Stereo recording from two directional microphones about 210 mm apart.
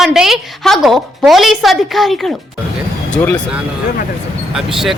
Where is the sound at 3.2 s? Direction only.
15° left (ahead or behind).